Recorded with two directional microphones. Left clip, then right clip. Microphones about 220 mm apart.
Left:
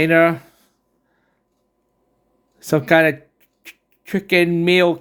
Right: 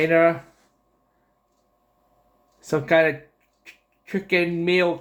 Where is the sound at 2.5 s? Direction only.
55° left (ahead or behind).